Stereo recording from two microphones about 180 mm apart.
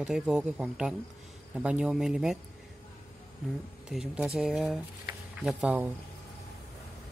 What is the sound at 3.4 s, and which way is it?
Speech, 5° right (ahead or behind).